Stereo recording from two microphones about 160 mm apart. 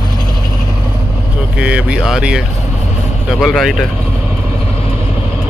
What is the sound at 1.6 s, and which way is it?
Speech, 10° right (ahead or behind).